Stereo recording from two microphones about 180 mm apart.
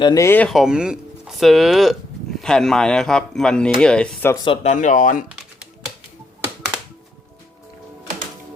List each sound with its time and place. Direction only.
0.0 s speech: 20° left (ahead or behind)
4.4 s speech: 40° left (ahead or behind)